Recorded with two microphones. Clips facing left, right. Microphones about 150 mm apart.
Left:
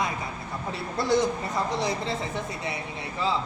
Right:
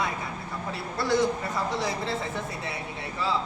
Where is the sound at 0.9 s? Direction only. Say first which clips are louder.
Left 1 dB; 20° left (ahead or behind).